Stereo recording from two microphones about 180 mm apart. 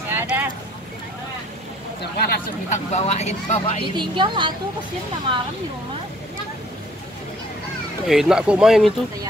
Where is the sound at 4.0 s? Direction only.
25° right (ahead or behind).